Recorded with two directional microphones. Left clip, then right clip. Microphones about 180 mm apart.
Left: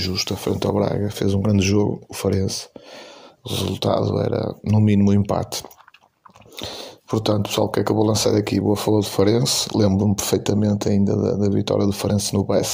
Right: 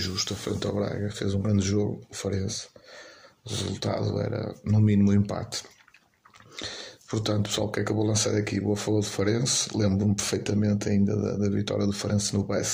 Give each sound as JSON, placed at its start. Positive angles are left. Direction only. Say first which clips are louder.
{"t": 0.0, "sound": "speech", "louder": "left 7 dB", "side_deg": 25}